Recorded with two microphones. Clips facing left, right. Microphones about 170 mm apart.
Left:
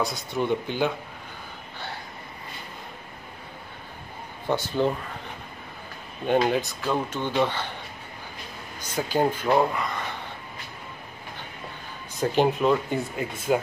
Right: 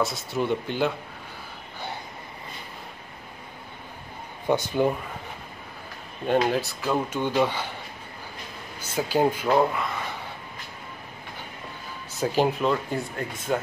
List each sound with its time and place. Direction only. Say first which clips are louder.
0.0 s speech: right 1 dB; centre (ahead or behind)
4.5 s speech: right 2 dB; 15° right (ahead or behind)
6.2 s speech: left 1 dB; centre (ahead or behind)
8.9 s speech: right 1 dB; 5° right (ahead or behind)
12.2 s speech: left 1 dB; 5° right (ahead or behind)